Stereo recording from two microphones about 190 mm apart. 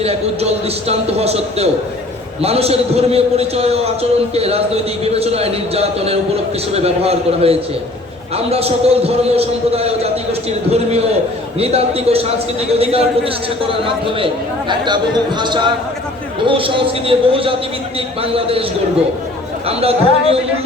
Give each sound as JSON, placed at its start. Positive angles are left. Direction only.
{"t": 0.0, "sound": "a man's voice", "side_deg": -35}
{"t": 19.6, "sound": "a man's voice", "side_deg": -30}